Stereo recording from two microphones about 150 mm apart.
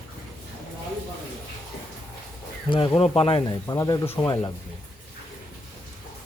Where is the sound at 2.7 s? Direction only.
35° left (ahead or behind).